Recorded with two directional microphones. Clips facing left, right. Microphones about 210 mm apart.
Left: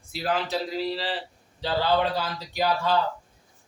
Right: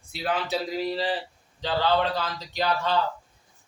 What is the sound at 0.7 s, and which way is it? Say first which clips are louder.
Speech: right 2 dB; 15° right (ahead or behind).